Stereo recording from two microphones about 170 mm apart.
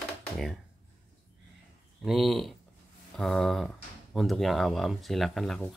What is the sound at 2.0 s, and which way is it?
Speech, centre (ahead or behind).